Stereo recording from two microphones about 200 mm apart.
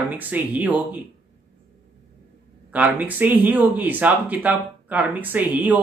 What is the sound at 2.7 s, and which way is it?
Speech, 10° right (ahead or behind).